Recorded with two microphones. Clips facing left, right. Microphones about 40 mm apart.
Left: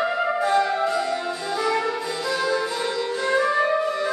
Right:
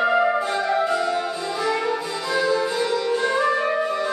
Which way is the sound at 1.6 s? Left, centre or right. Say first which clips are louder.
Right 1 dB; centre.